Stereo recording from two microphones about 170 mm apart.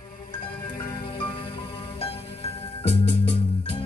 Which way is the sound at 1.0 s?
30° left (ahead or behind).